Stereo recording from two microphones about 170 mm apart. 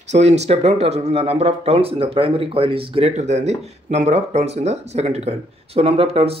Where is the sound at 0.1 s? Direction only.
40° right (ahead or behind).